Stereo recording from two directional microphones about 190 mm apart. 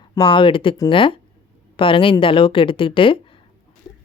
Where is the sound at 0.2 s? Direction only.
25° left (ahead or behind).